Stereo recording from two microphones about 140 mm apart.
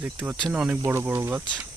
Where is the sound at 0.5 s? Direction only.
10° right (ahead or behind).